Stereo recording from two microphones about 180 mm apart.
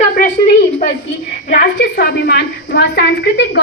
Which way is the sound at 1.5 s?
55° left (ahead or behind).